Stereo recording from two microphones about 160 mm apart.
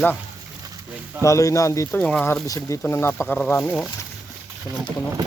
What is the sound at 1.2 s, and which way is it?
Speech, 20° left (ahead or behind).